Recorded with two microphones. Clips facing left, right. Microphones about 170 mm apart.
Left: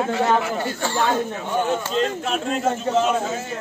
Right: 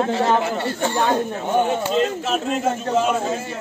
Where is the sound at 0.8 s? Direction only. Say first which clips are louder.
Right 2 dB; 20° right (ahead or behind).